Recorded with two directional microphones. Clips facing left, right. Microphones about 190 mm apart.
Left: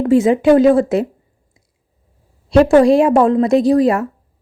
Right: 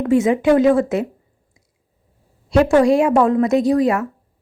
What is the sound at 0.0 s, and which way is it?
A woman's voice, 30° left (ahead or behind).